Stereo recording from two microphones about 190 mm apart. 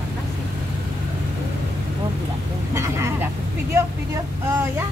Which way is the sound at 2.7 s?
15° right (ahead or behind).